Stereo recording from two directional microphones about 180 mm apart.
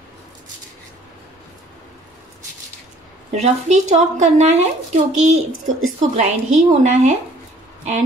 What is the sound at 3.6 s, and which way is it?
A woman's voice, 40° right (ahead or behind).